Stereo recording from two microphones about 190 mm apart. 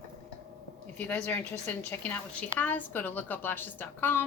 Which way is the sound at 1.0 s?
5° left (ahead or behind).